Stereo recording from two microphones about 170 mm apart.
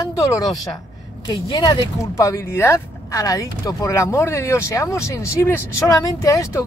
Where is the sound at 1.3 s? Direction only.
25° left (ahead or behind).